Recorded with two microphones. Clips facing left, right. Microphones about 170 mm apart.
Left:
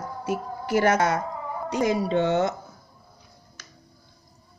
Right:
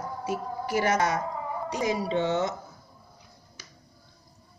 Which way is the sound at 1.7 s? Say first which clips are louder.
Left 5 dB; 55° left (ahead or behind).